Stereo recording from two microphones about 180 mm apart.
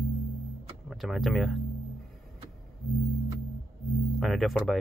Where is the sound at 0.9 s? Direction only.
Centre (ahead or behind).